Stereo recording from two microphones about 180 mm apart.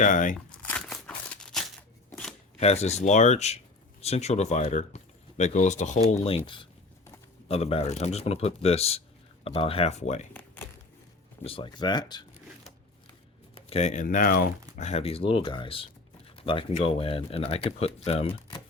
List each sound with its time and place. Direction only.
0.0 s speech: 45° left (ahead or behind)
0.6 s a sound: 5° left (ahead or behind)
2.0 s shuffling cards: 5° left (ahead or behind)
2.6 s speech: 35° left (ahead or behind)
6.2 s speech: 30° left (ahead or behind)
10.3 s a sound: 10° left (ahead or behind)
11.4 s speech: 30° left (ahead or behind)
13.7 s speech: 40° left (ahead or behind)
14.8 s speech: 35° left (ahead or behind)